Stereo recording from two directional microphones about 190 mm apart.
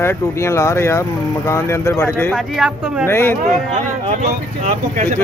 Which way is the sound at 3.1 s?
15° left (ahead or behind).